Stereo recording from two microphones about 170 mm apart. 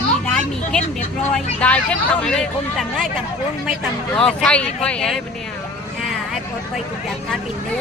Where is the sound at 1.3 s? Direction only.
10° left (ahead or behind).